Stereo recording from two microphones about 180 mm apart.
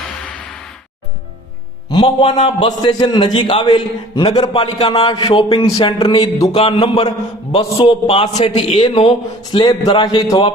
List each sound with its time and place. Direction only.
1.9 s a man's voice: 25° left (ahead or behind)